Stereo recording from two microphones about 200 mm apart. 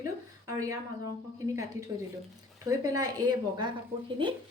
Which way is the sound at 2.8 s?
15° right (ahead or behind).